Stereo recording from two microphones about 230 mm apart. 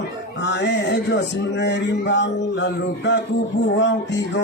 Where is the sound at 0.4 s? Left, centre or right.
Left.